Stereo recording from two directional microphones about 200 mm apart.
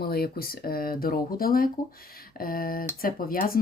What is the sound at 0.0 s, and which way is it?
Speech, 50° left (ahead or behind).